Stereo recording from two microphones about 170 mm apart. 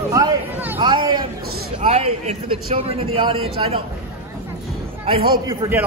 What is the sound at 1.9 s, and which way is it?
A man's voice, 35° right (ahead or behind).